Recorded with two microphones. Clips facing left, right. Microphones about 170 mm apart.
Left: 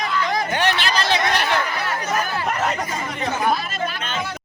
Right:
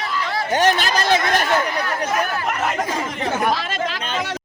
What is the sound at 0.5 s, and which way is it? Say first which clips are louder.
Speech: right 7 dB; 45° right (ahead or behind).